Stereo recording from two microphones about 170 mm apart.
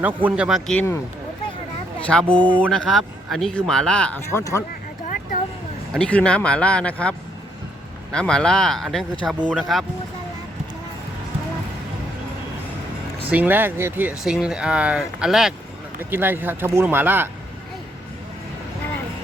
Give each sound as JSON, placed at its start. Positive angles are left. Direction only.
{"t": 0.0, "sound": "speech", "side_deg": -10}
{"t": 2.0, "sound": "speech", "side_deg": 5}
{"t": 4.3, "sound": "speech", "side_deg": 15}
{"t": 5.9, "sound": "speech", "side_deg": 5}
{"t": 13.3, "sound": "speech", "side_deg": -10}